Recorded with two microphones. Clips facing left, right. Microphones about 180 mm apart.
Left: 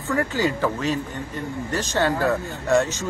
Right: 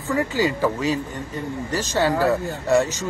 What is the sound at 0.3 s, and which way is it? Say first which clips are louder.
A man's voice: right 2 dB; 15° right (ahead or behind).